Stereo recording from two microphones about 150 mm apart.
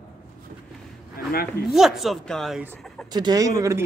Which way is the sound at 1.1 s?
85° left.